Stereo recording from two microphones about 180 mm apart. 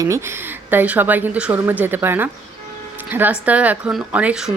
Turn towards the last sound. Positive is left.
turn(degrees=-5)  # may be behind; listen again after turning